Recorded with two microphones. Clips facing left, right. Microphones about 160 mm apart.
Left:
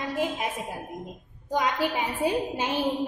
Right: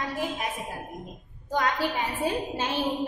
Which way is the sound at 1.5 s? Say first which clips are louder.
Left 1 dB; 20° left (ahead or behind).